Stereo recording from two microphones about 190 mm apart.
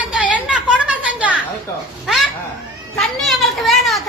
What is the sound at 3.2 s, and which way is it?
Speech, centre (ahead or behind).